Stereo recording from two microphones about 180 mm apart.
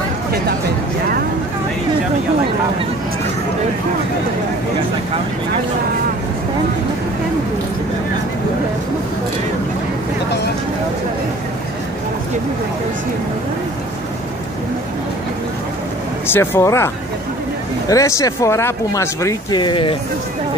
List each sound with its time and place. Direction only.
16.3 s speech: 15° left (ahead or behind)